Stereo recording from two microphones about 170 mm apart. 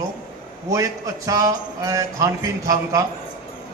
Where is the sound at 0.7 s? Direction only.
20° right (ahead or behind).